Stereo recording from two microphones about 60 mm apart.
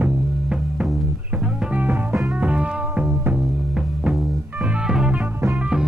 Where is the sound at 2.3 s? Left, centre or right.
Right.